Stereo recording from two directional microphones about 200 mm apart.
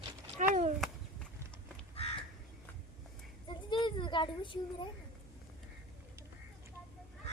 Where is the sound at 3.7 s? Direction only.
25° left (ahead or behind).